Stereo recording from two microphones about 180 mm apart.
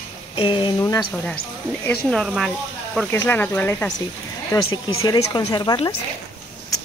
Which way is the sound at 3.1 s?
10° left (ahead or behind).